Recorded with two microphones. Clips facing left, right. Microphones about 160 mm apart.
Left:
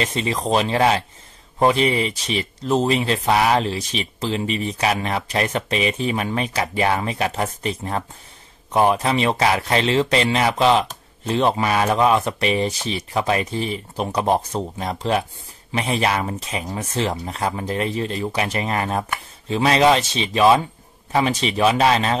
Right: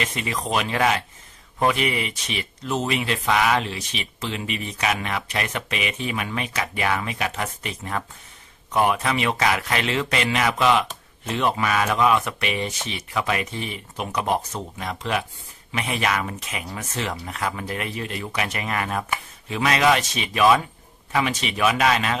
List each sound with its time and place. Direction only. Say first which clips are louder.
0.0 s speech: left 5 dB; 30° left (ahead or behind)